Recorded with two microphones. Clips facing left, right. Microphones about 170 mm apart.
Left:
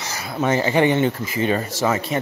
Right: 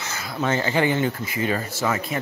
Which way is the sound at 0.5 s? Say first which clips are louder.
Left 4 dB; 25° left (ahead or behind).